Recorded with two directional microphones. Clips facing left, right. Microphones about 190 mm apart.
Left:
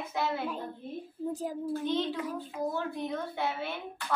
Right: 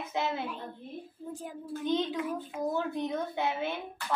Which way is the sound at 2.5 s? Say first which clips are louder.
Right 2 dB; 20° right (ahead or behind).